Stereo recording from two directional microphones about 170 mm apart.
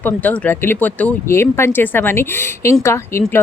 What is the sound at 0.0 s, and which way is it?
Speech, 10° left (ahead or behind).